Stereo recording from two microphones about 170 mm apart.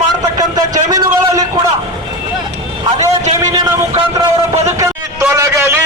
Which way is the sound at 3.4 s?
20° right (ahead or behind).